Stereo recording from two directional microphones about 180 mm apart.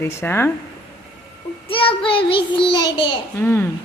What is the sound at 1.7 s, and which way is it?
Child singing, 30° left (ahead or behind).